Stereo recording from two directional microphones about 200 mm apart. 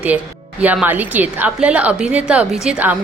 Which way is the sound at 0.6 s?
10° right (ahead or behind).